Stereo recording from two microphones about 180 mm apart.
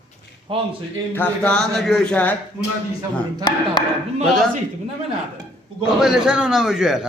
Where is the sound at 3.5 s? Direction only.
25° left (ahead or behind).